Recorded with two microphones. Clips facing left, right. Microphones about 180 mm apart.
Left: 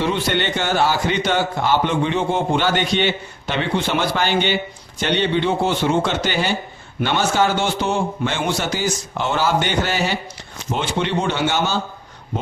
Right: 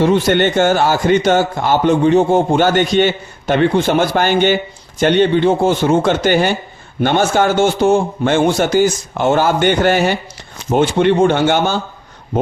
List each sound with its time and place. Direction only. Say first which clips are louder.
0.0 s a man's voice: right 8 dB; 45° right (ahead or behind)